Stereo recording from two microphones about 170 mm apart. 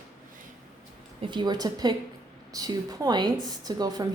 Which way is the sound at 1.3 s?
25° right (ahead or behind).